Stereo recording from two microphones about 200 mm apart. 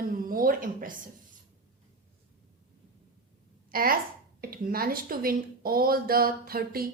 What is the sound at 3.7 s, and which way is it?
A woman's voice, 45° right (ahead or behind).